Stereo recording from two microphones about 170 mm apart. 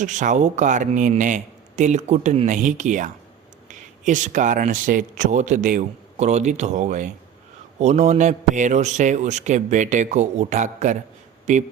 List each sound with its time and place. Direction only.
0.0 s speech: 45° right (ahead or behind)